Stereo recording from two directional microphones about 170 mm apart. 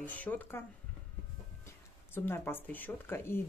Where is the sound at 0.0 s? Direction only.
10° left (ahead or behind).